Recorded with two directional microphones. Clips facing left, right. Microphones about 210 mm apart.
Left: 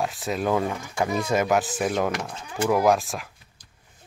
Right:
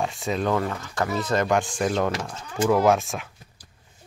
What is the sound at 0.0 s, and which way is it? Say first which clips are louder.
Speech: right 1 dB; centre (ahead or behind).